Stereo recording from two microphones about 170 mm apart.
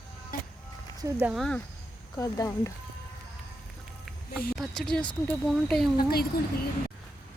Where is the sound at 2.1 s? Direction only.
20° left (ahead or behind).